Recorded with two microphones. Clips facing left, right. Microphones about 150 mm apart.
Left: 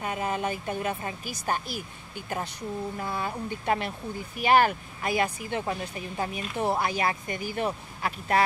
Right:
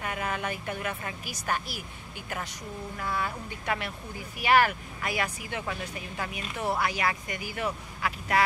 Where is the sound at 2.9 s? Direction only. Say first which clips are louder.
Left 1 dB; 25° left (ahead or behind).